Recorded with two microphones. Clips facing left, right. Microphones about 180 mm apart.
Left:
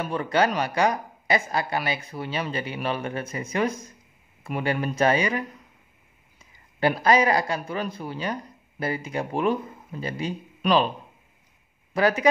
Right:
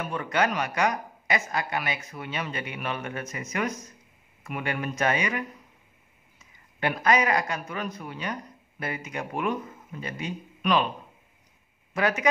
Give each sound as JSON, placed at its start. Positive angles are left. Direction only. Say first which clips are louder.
{"t": 0.0, "sound": "speech", "louder": "left 3 dB", "side_deg": 35}
{"t": 6.8, "sound": "speech", "louder": "left 4 dB", "side_deg": 30}
{"t": 11.9, "sound": "a man's voice", "louder": "left 4 dB", "side_deg": 35}